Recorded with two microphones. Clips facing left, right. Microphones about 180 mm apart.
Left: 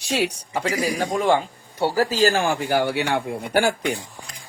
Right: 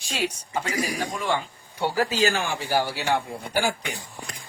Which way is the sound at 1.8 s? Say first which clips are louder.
Left 4 dB; 40° left (ahead or behind).